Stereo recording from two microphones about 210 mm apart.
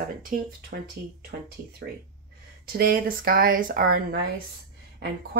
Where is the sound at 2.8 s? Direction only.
45° right (ahead or behind).